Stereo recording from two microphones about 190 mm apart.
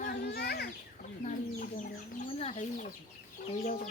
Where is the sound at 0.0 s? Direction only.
60° left (ahead or behind).